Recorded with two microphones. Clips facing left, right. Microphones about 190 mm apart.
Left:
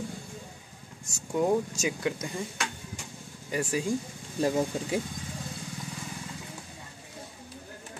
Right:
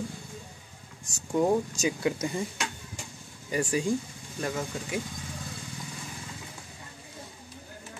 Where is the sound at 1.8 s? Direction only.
5° right (ahead or behind).